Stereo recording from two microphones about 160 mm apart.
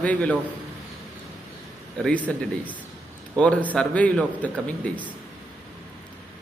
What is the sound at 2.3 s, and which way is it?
Speech, 5° left (ahead or behind).